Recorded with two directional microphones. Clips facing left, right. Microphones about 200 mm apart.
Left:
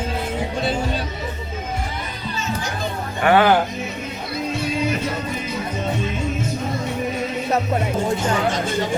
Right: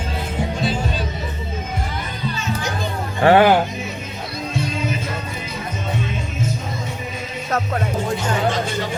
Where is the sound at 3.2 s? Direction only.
30° right (ahead or behind).